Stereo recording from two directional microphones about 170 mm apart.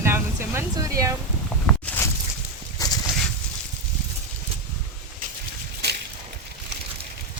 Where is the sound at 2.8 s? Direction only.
20° left (ahead or behind).